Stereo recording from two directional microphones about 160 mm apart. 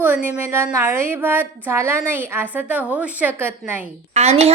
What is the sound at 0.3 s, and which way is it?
A woman's voice, 15° right (ahead or behind).